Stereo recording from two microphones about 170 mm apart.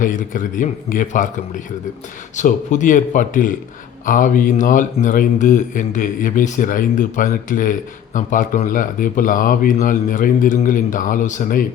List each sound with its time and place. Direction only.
0.0 s speech: 50° left (ahead or behind)